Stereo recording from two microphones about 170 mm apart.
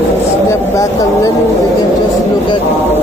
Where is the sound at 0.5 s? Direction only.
20° left (ahead or behind).